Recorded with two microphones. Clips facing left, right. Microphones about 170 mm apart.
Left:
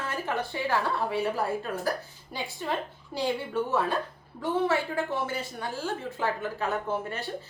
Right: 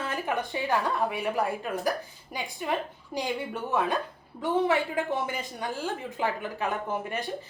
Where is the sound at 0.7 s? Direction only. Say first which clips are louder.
Right 1 dB; 15° right (ahead or behind).